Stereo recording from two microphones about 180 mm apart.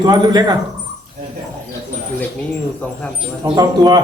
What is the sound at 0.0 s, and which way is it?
Speech, 20° right (ahead or behind).